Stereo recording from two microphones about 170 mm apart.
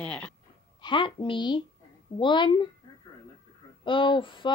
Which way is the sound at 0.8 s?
30° left (ahead or behind).